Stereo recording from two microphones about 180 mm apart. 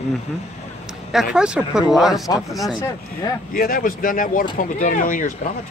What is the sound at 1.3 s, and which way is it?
Speech, 5° right (ahead or behind).